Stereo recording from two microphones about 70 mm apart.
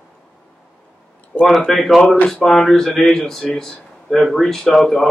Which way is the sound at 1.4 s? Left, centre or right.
Centre.